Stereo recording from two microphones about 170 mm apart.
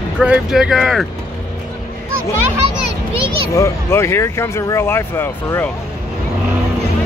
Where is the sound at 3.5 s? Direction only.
15° left (ahead or behind).